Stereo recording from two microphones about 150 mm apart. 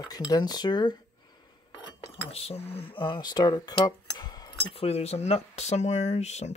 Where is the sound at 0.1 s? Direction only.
25° left (ahead or behind).